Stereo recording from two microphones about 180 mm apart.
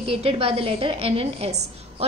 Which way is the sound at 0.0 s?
30° right (ahead or behind).